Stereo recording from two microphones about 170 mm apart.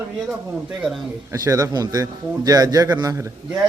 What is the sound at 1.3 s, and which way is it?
A man's voice, 20° right (ahead or behind).